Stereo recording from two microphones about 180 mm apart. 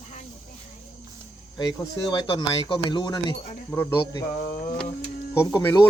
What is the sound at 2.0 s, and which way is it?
Speech, 25° left (ahead or behind).